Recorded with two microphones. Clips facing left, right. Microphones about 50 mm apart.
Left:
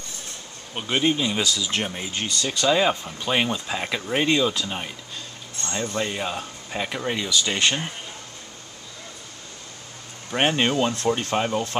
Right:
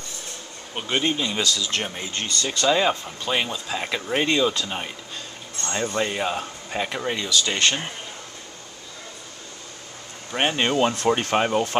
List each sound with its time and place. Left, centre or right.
0.7 s speech: centre
3.8 s speech: centre
5.6 s speech: centre
7.2 s speech: centre
10.3 s speech: centre
11.1 s speech: right